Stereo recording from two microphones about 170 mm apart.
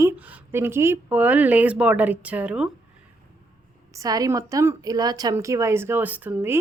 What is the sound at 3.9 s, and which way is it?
A woman's voice, 20° right (ahead or behind).